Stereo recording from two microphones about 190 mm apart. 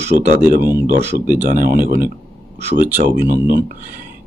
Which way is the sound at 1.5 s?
50° right (ahead or behind).